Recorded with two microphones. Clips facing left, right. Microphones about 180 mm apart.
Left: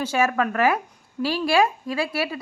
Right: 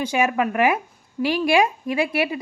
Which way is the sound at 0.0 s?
15° right (ahead or behind).